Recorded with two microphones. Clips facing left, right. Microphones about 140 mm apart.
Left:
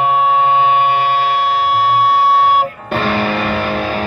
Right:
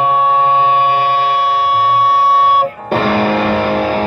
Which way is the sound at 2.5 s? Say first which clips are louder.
Right 2 dB; 40° right (ahead or behind).